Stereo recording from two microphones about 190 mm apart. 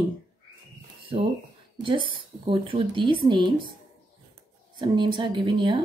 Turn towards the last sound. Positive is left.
turn(degrees=-25)  # may be behind; listen again after turning